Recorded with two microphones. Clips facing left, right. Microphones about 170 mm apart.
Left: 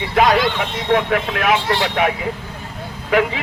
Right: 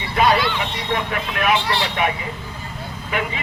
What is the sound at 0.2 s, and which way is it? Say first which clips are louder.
Vehicle: left 3 dB; 90° left.